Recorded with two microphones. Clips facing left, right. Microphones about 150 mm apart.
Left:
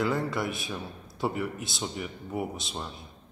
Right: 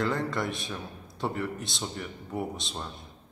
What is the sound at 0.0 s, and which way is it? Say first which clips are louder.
A man's voice: left 1 dB; 5° left (ahead or behind).